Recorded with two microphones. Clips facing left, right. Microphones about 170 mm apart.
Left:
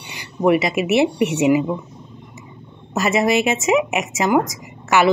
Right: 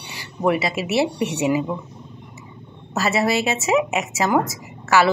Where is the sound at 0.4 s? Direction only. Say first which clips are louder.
Left 4 dB; 20° left (ahead or behind).